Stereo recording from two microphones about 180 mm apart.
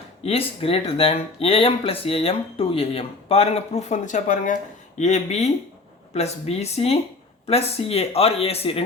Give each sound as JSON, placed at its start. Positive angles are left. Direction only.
{"t": 0.2, "sound": "speech", "side_deg": 35}